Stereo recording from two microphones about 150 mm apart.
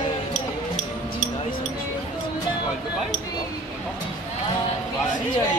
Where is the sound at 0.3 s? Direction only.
55° left (ahead or behind).